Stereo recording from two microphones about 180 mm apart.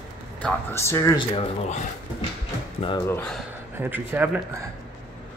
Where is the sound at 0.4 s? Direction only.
10° left (ahead or behind).